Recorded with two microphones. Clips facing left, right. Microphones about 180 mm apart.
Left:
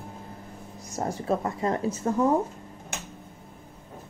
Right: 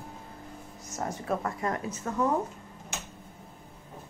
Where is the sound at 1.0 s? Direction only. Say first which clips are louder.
Left 4 dB; 30° left (ahead or behind).